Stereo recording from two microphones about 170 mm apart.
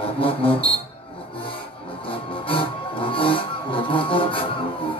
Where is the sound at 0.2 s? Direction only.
30° left (ahead or behind).